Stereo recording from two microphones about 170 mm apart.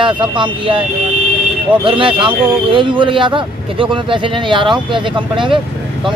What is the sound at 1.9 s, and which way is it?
A man's voice, 30° right (ahead or behind).